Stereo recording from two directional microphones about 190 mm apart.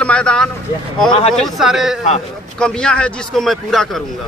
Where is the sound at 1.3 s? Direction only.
Centre (ahead or behind).